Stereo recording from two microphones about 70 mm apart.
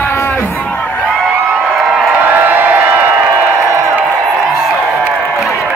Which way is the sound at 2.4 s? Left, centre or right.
Right.